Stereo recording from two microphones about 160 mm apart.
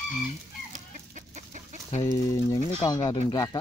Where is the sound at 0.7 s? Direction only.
50° right (ahead or behind).